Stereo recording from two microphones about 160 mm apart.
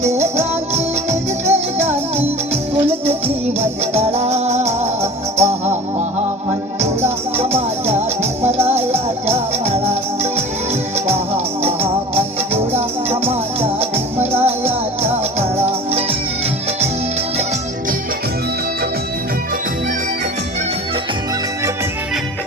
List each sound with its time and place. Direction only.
0.0 s music: 45° right (ahead or behind)
7.3 s music: 40° right (ahead or behind)
13.1 s music: 40° right (ahead or behind)